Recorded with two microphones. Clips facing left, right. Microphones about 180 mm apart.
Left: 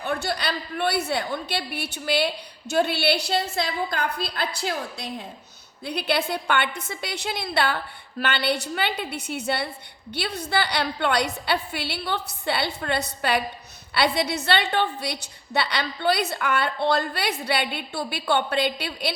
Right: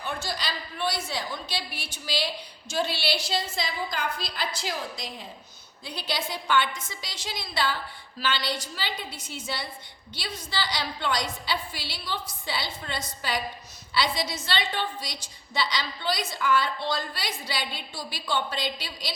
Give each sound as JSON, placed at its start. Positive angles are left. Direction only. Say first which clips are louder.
{"t": 0.0, "sound": "a woman's voice", "louder": "left 6 dB", "side_deg": 60}
{"t": 5.8, "sound": "a woman's voice", "louder": "left 7 dB", "side_deg": 60}